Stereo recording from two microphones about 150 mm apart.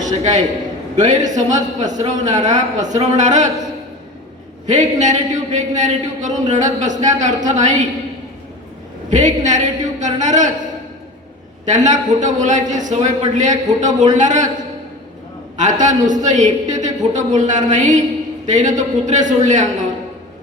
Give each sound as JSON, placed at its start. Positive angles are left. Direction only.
{"t": 0.0, "sound": "a man's voice", "side_deg": -55}
{"t": 4.6, "sound": "a woman's voice", "side_deg": -50}
{"t": 9.0, "sound": "a woman's voice", "side_deg": -55}
{"t": 11.6, "sound": "a man's voice", "side_deg": -55}
{"t": 15.5, "sound": "a man's voice", "side_deg": -55}